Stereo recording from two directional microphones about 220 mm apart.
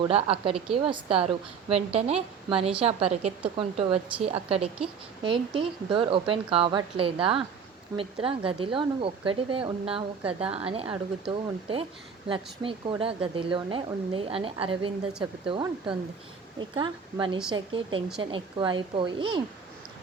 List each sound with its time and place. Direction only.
0.0 s speech: 25° right (ahead or behind)